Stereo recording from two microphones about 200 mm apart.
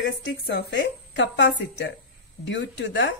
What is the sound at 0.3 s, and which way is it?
A woman's voice, 55° left (ahead or behind).